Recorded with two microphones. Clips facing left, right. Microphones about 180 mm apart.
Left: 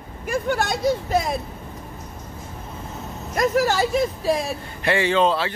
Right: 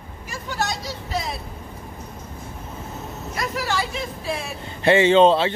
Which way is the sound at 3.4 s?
45° left (ahead or behind).